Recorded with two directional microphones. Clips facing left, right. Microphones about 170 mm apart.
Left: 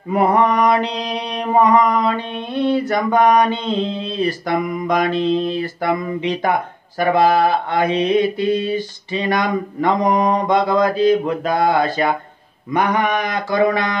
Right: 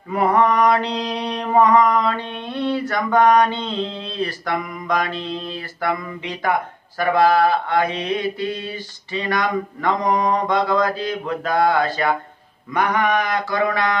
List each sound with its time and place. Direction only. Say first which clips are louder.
0.1 s mantra: left 2 dB; 15° left (ahead or behind)